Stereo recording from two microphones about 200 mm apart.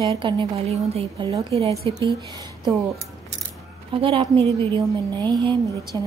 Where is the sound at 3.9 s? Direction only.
25° right (ahead or behind).